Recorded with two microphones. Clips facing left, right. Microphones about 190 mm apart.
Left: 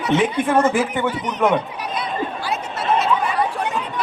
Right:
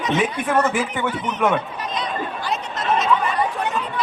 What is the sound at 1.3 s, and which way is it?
Chatter, 15° left (ahead or behind).